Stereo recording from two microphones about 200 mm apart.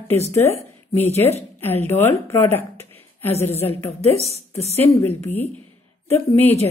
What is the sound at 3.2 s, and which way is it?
Speech, 30° left (ahead or behind).